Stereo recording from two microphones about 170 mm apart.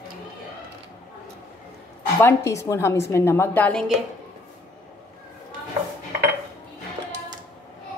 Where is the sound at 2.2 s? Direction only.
15° left (ahead or behind).